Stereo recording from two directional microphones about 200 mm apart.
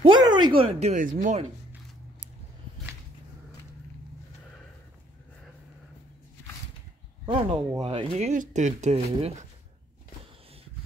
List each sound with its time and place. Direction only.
0.0 s speech: 20° right (ahead or behind)
7.2 s speech: 25° right (ahead or behind)